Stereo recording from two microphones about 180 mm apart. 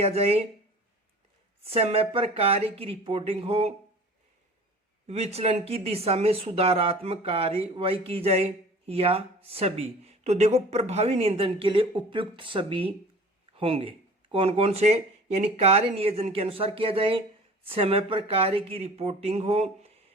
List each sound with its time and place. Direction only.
0.0 s speech: 35° right (ahead or behind)
1.6 s speech: 35° right (ahead or behind)
5.0 s speech: 35° right (ahead or behind)